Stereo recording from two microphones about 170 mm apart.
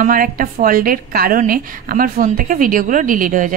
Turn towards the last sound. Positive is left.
turn(degrees=-50)  # may be behind; listen again after turning